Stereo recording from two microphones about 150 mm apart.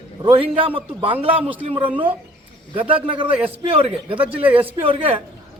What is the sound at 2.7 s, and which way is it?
A man's voice, 35° right (ahead or behind).